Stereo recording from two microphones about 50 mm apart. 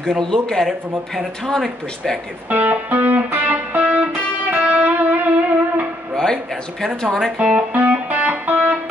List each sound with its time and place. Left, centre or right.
0.3 s speech: centre
2.5 s music: right
6.1 s speech: centre
7.3 s speech: right
7.9 s music: right